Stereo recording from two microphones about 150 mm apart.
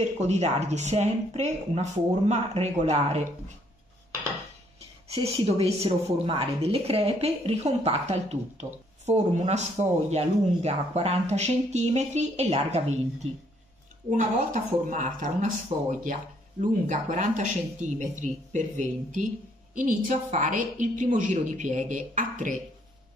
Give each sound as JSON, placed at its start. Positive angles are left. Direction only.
{"t": 0.2, "sound": "a woman's voice", "side_deg": -50}
{"t": 5.1, "sound": "a woman's voice", "side_deg": -45}
{"t": 14.1, "sound": "speech", "side_deg": -60}